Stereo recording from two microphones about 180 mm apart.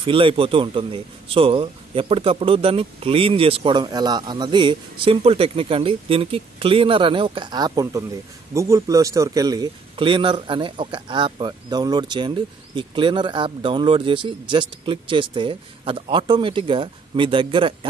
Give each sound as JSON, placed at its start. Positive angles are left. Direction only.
{"t": 0.0, "sound": "a man's voice", "side_deg": -30}